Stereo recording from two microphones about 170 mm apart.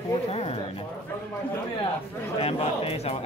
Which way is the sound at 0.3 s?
35° left (ahead or behind).